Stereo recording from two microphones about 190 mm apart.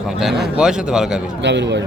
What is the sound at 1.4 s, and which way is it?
Speech, 65° right (ahead or behind).